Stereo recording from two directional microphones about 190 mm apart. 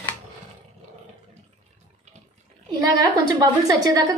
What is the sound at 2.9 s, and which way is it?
A woman's voice, 20° right (ahead or behind).